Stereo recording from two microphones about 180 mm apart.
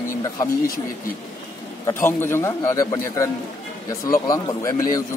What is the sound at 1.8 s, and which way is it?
Speech, 15° left (ahead or behind).